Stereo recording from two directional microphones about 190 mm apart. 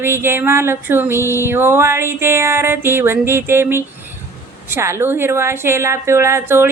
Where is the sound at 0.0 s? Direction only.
15° right (ahead or behind).